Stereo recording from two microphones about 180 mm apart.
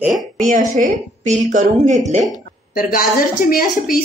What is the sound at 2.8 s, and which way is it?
Speech, 50° left (ahead or behind).